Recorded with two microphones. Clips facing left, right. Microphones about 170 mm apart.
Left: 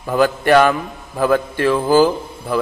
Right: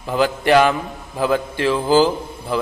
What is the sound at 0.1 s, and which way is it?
A man's voice, 15° right (ahead or behind).